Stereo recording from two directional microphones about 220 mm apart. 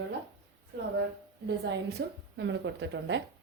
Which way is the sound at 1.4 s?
50° right (ahead or behind).